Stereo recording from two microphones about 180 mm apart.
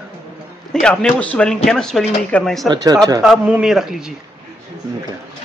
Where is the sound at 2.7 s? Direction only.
20° right (ahead or behind).